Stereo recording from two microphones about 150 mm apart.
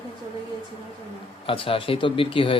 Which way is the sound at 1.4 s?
35° left (ahead or behind).